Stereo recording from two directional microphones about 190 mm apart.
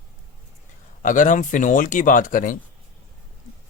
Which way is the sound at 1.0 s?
40° left (ahead or behind).